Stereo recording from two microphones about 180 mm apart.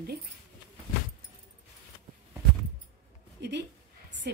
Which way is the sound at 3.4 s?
70° right (ahead or behind).